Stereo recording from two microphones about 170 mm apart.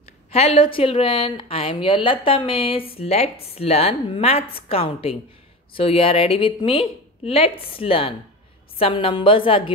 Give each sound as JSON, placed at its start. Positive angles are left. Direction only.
{"t": 0.3, "sound": "a woman's voice", "side_deg": 35}